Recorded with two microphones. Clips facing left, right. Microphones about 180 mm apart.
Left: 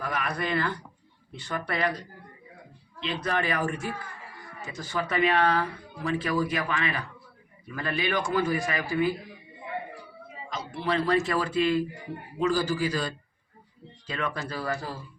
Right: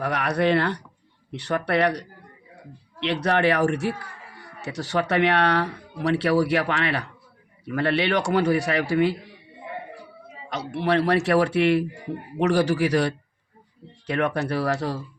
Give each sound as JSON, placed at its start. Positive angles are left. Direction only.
{"t": 0.0, "sound": "speech", "side_deg": -70}
{"t": 10.5, "sound": "speech", "side_deg": -70}